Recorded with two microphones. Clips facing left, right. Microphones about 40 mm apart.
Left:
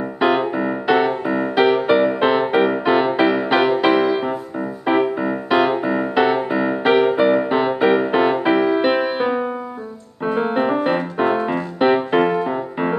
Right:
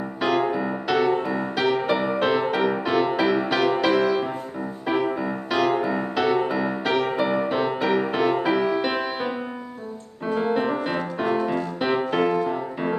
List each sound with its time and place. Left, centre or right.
0.2 s music: left